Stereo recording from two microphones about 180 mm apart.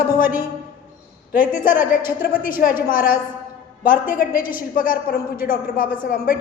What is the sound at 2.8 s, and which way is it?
A woman's voice, 50° left (ahead or behind).